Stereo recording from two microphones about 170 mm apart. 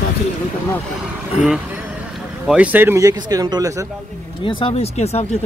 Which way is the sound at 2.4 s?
5° right (ahead or behind).